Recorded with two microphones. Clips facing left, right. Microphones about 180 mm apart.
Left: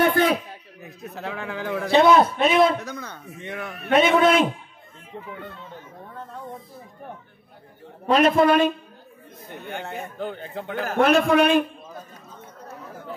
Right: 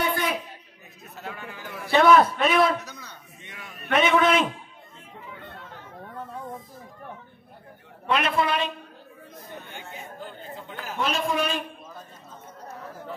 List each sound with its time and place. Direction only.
0.0 s a sound: 55° left (ahead or behind)
1.1 s a man's voice: 80° left
1.9 s a man's voice: 25° left (ahead or behind)
2.8 s a sound: 55° left (ahead or behind)
3.9 s a man's voice: 35° left (ahead or behind)
8.1 s a man's voice: 40° left (ahead or behind)
9.5 s a man's voice: 65° left (ahead or behind)